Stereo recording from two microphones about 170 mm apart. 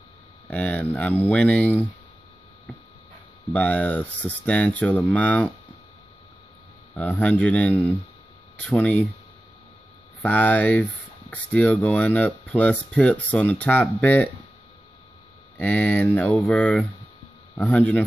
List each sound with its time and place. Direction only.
0.5 s speech: 10° left (ahead or behind)
3.5 s speech: 10° left (ahead or behind)
7.0 s speech: 10° left (ahead or behind)
10.2 s speech: 10° left (ahead or behind)
15.5 s speech: 10° left (ahead or behind)